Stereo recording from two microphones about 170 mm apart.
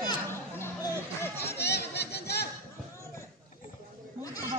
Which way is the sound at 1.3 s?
75° left (ahead or behind).